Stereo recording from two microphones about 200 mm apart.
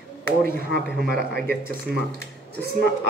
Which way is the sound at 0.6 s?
50° right (ahead or behind).